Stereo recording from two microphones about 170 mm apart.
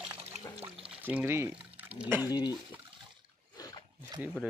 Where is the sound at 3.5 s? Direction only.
20° left (ahead or behind).